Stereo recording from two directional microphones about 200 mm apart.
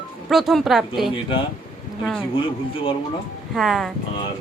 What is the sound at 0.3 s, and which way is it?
Speech, centre (ahead or behind).